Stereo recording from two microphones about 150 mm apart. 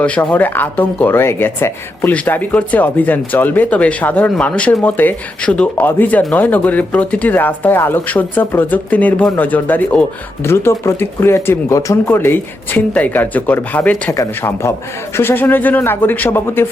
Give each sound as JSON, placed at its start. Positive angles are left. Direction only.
{"t": 0.0, "sound": "speech", "side_deg": 10}